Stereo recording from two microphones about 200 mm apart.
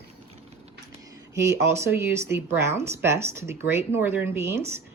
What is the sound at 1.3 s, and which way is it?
Speech, 15° right (ahead or behind).